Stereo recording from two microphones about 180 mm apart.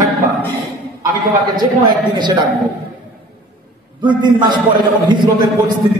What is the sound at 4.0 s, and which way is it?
A man's voice, 25° right (ahead or behind).